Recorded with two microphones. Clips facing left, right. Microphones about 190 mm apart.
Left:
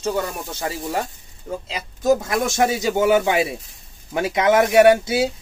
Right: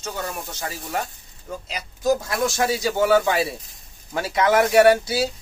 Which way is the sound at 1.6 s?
25° left (ahead or behind).